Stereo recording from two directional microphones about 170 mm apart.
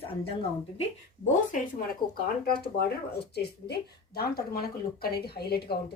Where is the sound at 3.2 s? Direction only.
70° left (ahead or behind).